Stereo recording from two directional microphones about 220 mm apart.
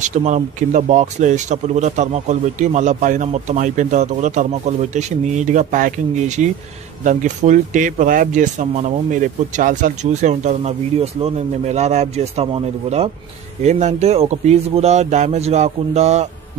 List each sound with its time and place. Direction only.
0.0 s speech: 35° right (ahead or behind)